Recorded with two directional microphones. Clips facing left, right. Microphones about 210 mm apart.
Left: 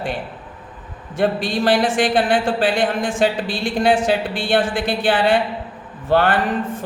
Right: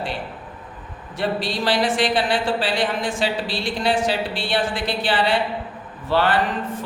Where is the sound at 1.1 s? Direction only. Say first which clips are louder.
Left 5 dB; 50° left (ahead or behind).